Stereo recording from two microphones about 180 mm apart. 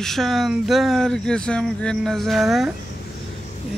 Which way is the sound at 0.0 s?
Centre (ahead or behind).